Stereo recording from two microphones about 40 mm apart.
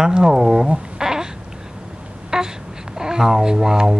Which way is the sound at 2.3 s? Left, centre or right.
Right.